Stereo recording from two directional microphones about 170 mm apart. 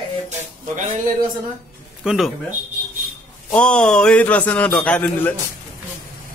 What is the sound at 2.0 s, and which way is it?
Speech, 5° right (ahead or behind).